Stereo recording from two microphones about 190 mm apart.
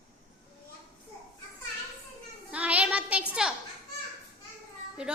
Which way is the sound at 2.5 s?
5° right (ahead or behind).